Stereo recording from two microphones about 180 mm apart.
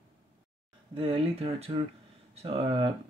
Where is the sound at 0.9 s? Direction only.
30° right (ahead or behind).